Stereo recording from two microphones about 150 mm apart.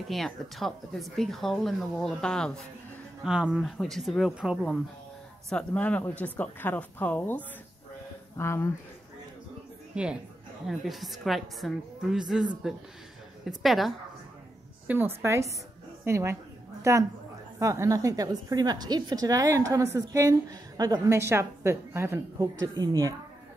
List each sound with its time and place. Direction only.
0.1 s speech: centre (ahead or behind)
3.3 s speech: 5° right (ahead or behind); by 8.6 s 15° left (ahead or behind)
9.9 s a woman's voice: 5° right (ahead or behind)
13.5 s a woman's voice: centre (ahead or behind); by 23.1 s 25° right (ahead or behind)